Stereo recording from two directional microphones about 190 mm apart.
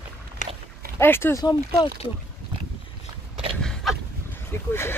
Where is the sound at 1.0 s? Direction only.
10° left (ahead or behind).